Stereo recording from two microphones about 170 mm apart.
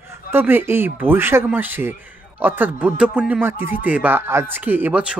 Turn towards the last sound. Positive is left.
turn(degrees=-10)  # may be behind; listen again after turning